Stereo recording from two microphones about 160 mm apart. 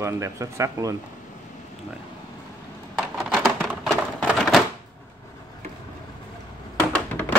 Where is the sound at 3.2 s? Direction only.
Centre (ahead or behind).